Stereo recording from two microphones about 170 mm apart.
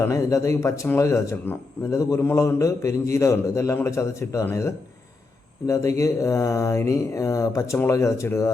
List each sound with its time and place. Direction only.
0.0 s speech: 20° left (ahead or behind)